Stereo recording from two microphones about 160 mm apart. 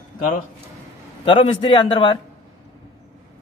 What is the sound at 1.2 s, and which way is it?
Speech, 30° left (ahead or behind).